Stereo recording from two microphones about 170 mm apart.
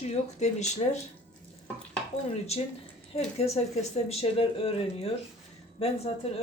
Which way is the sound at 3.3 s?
40° left (ahead or behind).